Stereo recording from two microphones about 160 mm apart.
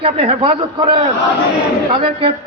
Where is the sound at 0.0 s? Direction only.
40° right (ahead or behind).